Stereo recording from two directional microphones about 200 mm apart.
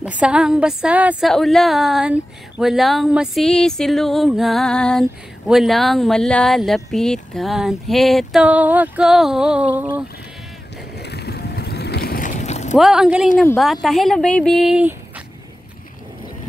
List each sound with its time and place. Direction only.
0.0 s speech: 5° right (ahead or behind)
11.0 s boat: 55° left (ahead or behind); by 12.7 s 35° left (ahead or behind)
12.7 s speech: centre (ahead or behind)